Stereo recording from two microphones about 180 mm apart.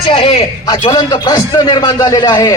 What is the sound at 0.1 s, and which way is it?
A man's voice, 30° left (ahead or behind).